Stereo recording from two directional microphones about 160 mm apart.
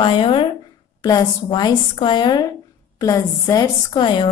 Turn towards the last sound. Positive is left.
turn(degrees=30)  # may be behind; listen again after turning